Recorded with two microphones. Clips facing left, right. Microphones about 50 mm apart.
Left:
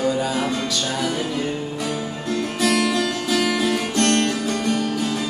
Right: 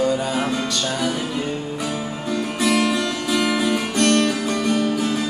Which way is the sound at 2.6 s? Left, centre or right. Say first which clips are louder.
Right 1 dB; centre.